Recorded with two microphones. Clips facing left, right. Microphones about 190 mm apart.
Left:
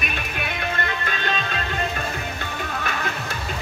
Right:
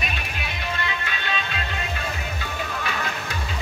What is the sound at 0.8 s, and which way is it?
Music, 45° left (ahead or behind).